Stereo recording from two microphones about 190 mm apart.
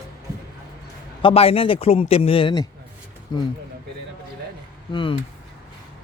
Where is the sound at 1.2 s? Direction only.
30° left (ahead or behind).